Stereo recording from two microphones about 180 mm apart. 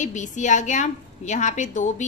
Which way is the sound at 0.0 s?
45° left (ahead or behind).